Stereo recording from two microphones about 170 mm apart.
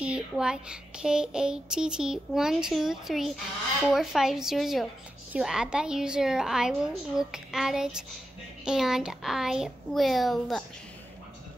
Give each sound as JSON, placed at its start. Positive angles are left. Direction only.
{"t": 0.0, "sound": "a child's voice", "side_deg": -5}